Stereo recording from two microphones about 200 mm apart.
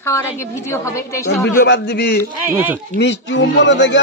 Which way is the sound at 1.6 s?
55° left (ahead or behind).